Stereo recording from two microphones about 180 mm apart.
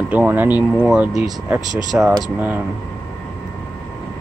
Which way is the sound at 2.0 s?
15° right (ahead or behind).